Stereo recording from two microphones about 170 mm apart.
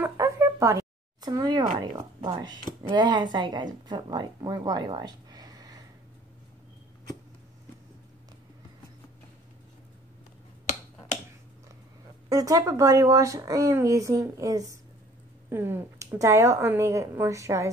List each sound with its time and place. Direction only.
0.0 s a sound: 15° right (ahead or behind)
2.8 s speech: 25° right (ahead or behind)
12.3 s speech: 20° right (ahead or behind)